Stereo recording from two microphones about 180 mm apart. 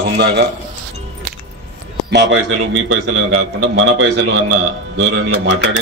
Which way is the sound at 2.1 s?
90° right.